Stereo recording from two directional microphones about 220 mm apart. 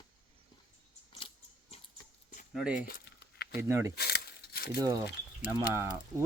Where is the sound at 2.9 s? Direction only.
45° left (ahead or behind).